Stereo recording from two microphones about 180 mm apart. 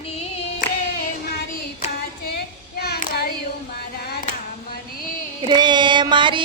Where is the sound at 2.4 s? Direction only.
60° left (ahead or behind).